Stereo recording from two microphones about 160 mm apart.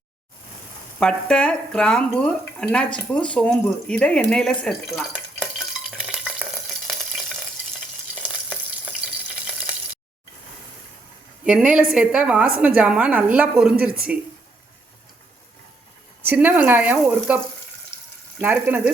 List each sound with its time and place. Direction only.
0.9 s speech: 5° left (ahead or behind)
5.9 s stir: 5° right (ahead or behind)
11.4 s a woman's voice: 5° right (ahead or behind)
16.2 s a woman's voice: 10° right (ahead or behind)
17.9 s frying: 15° left (ahead or behind)
18.3 s a woman's voice: 15° right (ahead or behind)